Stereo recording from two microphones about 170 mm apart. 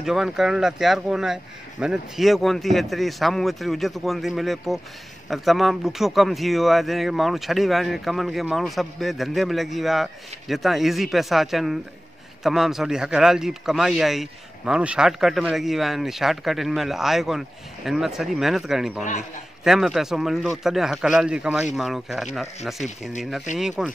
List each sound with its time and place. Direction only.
0.0 s speech: centre (ahead or behind)
23.5 s speech: 45° left (ahead or behind)